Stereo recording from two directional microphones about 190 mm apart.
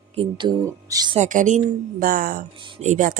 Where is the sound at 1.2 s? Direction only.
40° right (ahead or behind).